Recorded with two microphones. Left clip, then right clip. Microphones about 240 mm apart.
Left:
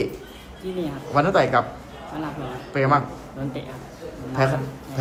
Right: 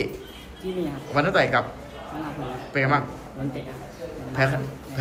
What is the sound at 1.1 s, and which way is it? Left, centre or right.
Speech, centre.